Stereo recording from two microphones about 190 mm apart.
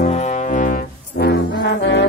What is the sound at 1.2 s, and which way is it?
Music, 65° left (ahead or behind).